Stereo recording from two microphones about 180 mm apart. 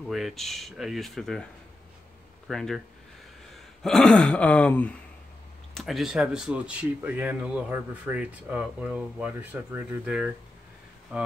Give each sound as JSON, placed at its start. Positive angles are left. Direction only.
{"t": 0.1, "sound": "speech", "side_deg": 0}
{"t": 3.5, "sound": "a sound", "side_deg": 5}
{"t": 5.8, "sound": "speech", "side_deg": 0}